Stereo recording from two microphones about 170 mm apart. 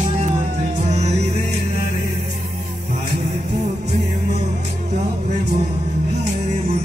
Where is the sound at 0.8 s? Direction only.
40° right (ahead or behind).